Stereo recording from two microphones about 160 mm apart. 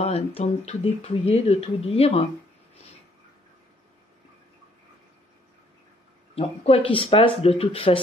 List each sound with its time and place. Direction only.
0.0 s speech: 40° left (ahead or behind)
6.3 s speech: 40° left (ahead or behind)